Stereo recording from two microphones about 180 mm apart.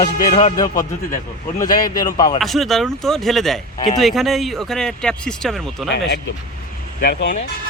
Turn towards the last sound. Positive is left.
turn(degrees=65)  # may be behind; listen again after turning